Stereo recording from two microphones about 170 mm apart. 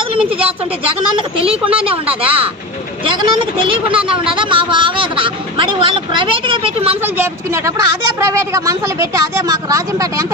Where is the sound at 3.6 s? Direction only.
30° right (ahead or behind).